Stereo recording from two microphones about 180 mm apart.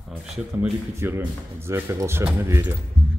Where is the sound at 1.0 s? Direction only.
10° right (ahead or behind).